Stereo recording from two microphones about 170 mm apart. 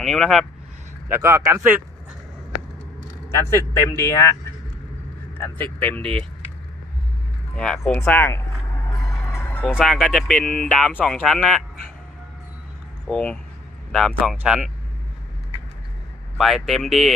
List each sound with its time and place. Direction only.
0.0 s speech: centre (ahead or behind)
1.1 s speech: 15° right (ahead or behind)
3.3 s speech: 15° left (ahead or behind)
5.4 s speech: 10° left (ahead or behind)
7.5 s speech: 5° left (ahead or behind)
8.9 s music: 20° left (ahead or behind)
9.7 s speech: 5° right (ahead or behind)
13.1 s speech: 5° left (ahead or behind)
16.3 s speech: centre (ahead or behind)